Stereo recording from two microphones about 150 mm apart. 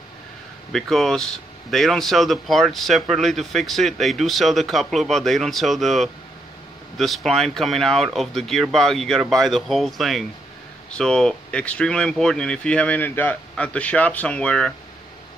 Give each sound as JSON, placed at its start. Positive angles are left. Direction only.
{"t": 0.7, "sound": "speech", "side_deg": 5}